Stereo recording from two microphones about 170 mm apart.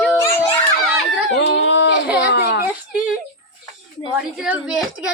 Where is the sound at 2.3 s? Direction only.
75° left (ahead or behind).